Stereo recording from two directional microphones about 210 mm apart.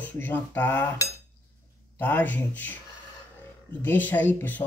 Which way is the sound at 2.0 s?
10° left (ahead or behind).